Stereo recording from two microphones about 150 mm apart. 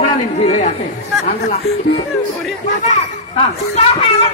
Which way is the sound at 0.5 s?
45° left (ahead or behind).